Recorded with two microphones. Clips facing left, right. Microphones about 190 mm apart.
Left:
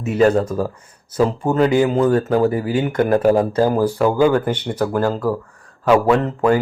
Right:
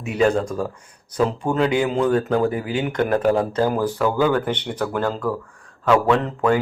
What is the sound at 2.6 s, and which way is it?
Speech, 40° left (ahead or behind).